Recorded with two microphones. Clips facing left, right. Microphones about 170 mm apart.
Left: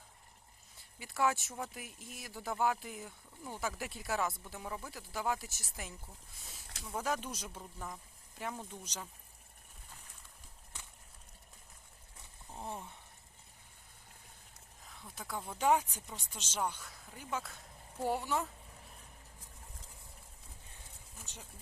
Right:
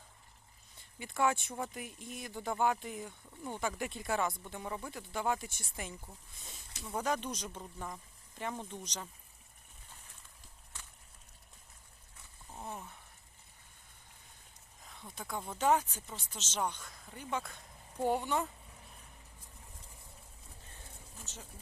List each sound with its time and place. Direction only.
0.8 s speech: centre (ahead or behind)
12.6 s speech: 25° left (ahead or behind)
14.8 s speech: centre (ahead or behind)